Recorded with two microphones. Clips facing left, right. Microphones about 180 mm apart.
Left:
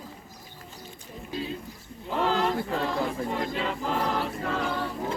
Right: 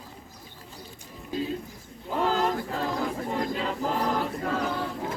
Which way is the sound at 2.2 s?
45° right (ahead or behind).